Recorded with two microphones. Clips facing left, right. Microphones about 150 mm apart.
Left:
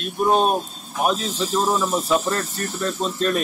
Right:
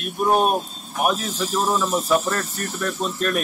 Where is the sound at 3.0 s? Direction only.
5° right (ahead or behind).